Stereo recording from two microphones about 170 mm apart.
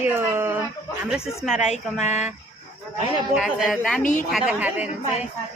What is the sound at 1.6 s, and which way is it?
Speech, 40° left (ahead or behind).